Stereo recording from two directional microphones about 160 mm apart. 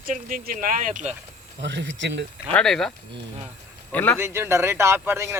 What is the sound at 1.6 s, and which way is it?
Speech, 90° right.